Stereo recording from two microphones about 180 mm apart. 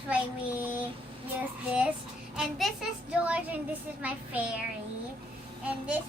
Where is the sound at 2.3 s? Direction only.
Centre (ahead or behind).